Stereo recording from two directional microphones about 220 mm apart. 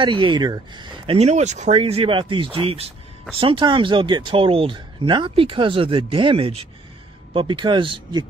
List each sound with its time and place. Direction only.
0.0 s speech: 20° right (ahead or behind)